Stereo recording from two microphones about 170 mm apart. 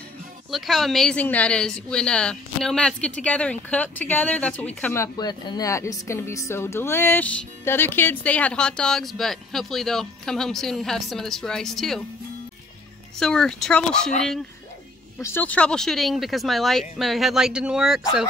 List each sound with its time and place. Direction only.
0.5 s a woman's voice: centre (ahead or behind)
13.2 s a woman's voice: 5° left (ahead or behind)
15.2 s a woman's voice: 10° left (ahead or behind)